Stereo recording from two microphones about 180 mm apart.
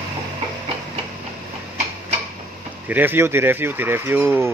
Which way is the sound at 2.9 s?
10° right (ahead or behind).